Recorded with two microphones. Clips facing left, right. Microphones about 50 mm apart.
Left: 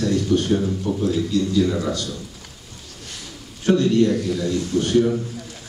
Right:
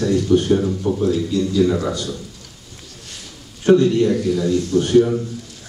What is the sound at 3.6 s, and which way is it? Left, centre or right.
Speech, centre.